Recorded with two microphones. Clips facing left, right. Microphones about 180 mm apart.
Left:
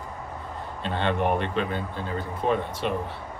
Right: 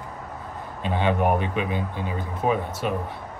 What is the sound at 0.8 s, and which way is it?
Speech, 10° right (ahead or behind).